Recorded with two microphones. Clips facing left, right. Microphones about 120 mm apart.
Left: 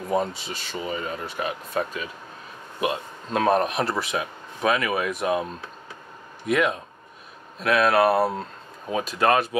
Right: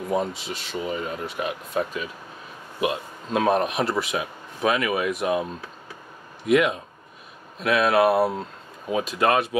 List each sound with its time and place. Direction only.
0.1 s speech: centre (ahead or behind)